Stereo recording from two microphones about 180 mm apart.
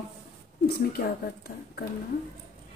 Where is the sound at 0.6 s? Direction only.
60° left (ahead or behind).